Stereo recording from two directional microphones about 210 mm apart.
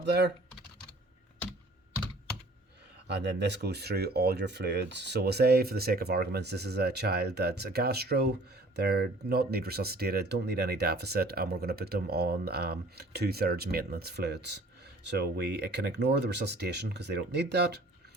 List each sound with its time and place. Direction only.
0.0 s speech: 55° right (ahead or behind)
3.1 s speech: 55° right (ahead or behind)